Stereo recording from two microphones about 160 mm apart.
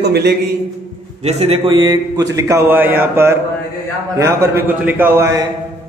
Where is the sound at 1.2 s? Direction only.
40° right (ahead or behind).